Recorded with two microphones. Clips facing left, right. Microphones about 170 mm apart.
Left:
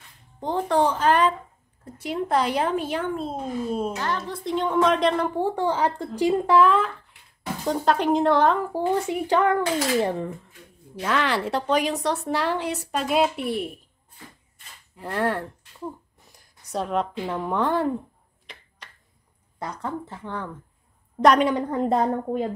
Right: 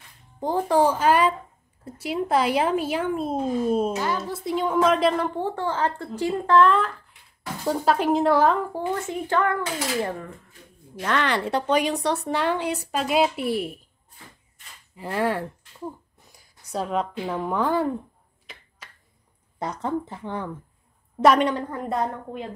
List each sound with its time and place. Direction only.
0.4 s speech: 10° right (ahead or behind)
4.3 s speech: 5° right (ahead or behind)
5.4 s speech: 15° left (ahead or behind); by 8.6 s 5° right (ahead or behind)
8.7 s speech: 15° left (ahead or behind)
11.0 s speech: 5° left (ahead or behind)
15.0 s speech: centre (ahead or behind)
18.5 s finger snapping: centre (ahead or behind)
19.6 s speech: 20° right (ahead or behind)
21.2 s speech: centre (ahead or behind)
21.5 s a woman's voice: 20° left (ahead or behind); by 22.5 s 40° left (ahead or behind)